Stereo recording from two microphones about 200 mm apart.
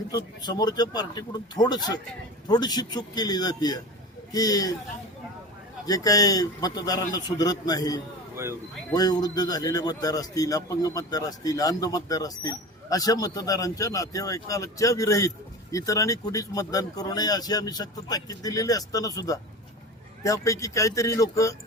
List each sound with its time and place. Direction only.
0.1 s a man's voice: 20° left (ahead or behind)
5.8 s a man's voice: 20° left (ahead or behind)